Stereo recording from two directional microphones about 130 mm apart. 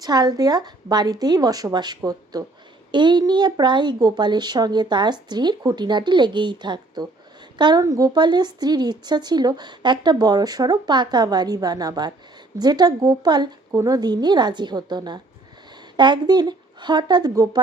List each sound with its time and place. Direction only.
0.0 s speech: 30° right (ahead or behind)